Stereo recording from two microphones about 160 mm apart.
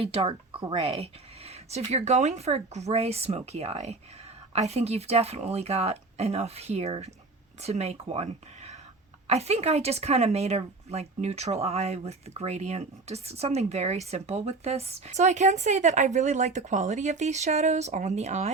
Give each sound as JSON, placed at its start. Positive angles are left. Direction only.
{"t": 0.0, "sound": "a woman's voice", "side_deg": -35}